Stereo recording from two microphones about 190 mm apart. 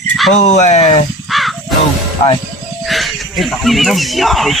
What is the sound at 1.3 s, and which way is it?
Crow, centre (ahead or behind).